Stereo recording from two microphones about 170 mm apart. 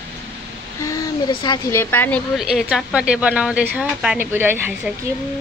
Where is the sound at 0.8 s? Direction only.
20° left (ahead or behind).